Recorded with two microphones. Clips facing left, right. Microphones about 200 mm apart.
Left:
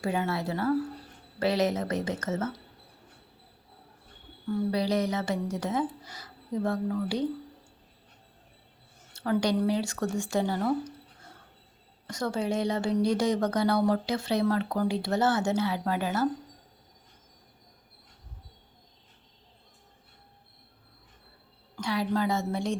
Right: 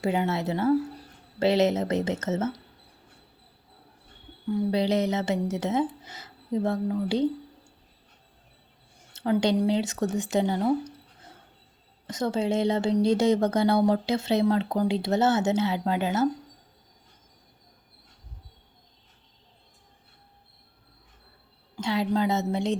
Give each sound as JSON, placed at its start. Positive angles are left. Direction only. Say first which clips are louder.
{"t": 0.0, "sound": "speech", "louder": "right 3 dB", "side_deg": -20}
{"t": 4.4, "sound": "speech", "louder": "right 3 dB", "side_deg": -25}
{"t": 9.1, "sound": "speech", "louder": "right 3 dB", "side_deg": -20}
{"t": 21.8, "sound": "speech", "louder": "right 3 dB", "side_deg": -25}